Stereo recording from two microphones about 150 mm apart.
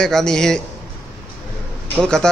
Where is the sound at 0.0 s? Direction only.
5° left (ahead or behind).